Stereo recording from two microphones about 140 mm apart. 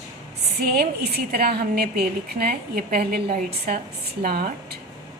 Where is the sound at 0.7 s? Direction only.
90° right.